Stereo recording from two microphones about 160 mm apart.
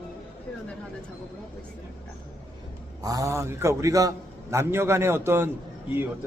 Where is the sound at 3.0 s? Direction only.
20° right (ahead or behind).